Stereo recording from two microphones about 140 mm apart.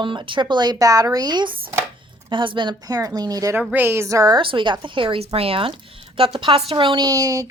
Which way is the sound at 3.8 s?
20° right (ahead or behind).